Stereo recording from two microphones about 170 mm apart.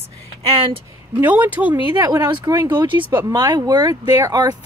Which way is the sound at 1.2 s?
10° right (ahead or behind).